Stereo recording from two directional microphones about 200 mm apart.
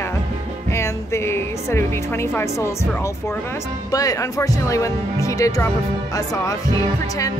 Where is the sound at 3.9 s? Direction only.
15° left (ahead or behind).